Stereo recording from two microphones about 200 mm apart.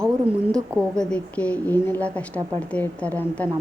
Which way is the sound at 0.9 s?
5° left (ahead or behind).